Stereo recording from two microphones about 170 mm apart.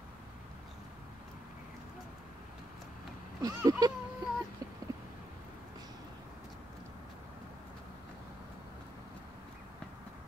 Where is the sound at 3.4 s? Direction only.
20° right (ahead or behind).